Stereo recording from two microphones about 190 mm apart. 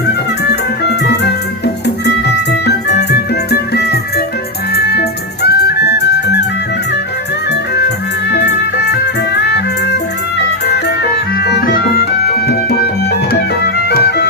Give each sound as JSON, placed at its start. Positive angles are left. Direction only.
{"t": 1.0, "sound": "music", "side_deg": 65}
{"t": 8.8, "sound": "music", "side_deg": 60}
{"t": 11.4, "sound": "music", "side_deg": 60}
{"t": 13.9, "sound": "music", "side_deg": 60}